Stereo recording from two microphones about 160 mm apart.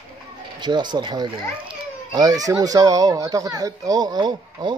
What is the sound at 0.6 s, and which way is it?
Speech, 30° right (ahead or behind).